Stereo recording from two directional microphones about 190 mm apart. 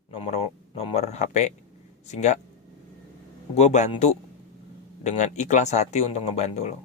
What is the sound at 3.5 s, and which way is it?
Speech, 35° left (ahead or behind).